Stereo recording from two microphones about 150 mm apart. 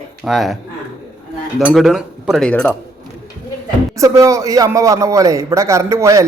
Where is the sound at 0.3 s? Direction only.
Centre (ahead or behind).